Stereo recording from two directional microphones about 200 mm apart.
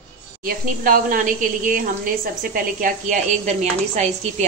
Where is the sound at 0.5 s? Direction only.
45° right (ahead or behind).